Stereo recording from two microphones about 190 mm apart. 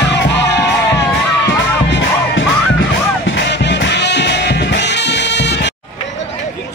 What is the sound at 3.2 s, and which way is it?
Music, 65° left (ahead or behind).